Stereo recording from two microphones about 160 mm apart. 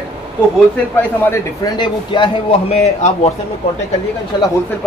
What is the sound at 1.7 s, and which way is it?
A man's voice, 30° left (ahead or behind).